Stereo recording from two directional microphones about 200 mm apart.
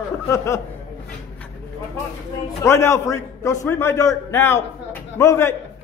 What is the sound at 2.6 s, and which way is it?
A man's voice, 15° left (ahead or behind).